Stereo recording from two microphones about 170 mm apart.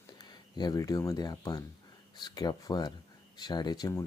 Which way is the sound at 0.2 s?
25° left (ahead or behind).